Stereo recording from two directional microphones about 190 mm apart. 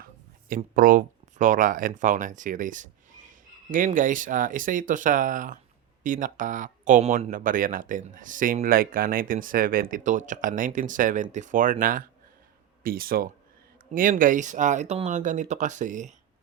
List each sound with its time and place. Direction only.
0.0 s speech: 45° right (ahead or behind)